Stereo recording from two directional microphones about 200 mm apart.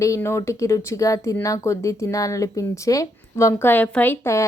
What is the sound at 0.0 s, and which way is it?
A woman's voice, 15° left (ahead or behind).